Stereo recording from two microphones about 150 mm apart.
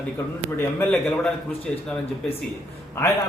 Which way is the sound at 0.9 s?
5° left (ahead or behind).